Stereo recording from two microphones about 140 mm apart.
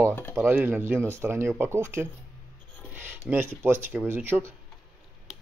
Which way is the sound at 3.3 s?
15° right (ahead or behind).